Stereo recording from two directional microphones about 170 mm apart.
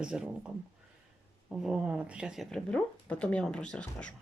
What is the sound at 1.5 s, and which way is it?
Speech, 5° right (ahead or behind).